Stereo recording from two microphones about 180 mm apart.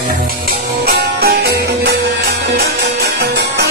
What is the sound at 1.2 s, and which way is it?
Music, 65° right (ahead or behind).